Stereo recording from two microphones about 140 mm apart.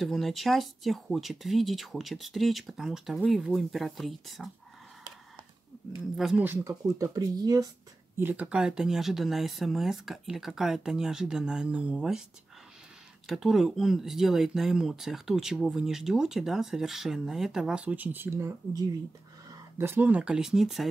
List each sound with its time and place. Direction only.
0.0 s speech: centre (ahead or behind)
6.1 s speech: centre (ahead or behind)
6.4 s speech: 20° right (ahead or behind)
8.2 s speech: 10° right (ahead or behind)
13.3 s speech: centre (ahead or behind)